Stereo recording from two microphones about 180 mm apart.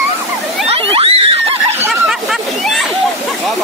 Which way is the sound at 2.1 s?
Centre (ahead or behind).